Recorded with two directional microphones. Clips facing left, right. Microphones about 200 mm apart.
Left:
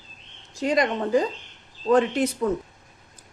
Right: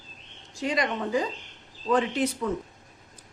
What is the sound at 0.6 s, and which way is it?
A woman's voice, 45° left (ahead or behind).